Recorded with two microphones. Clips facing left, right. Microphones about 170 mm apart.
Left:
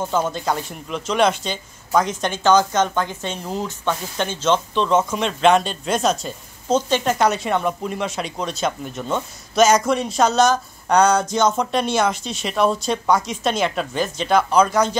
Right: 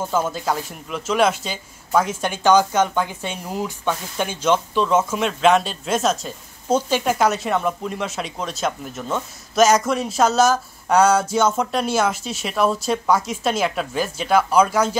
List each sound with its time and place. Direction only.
0.0 s speech: 5° right (ahead or behind)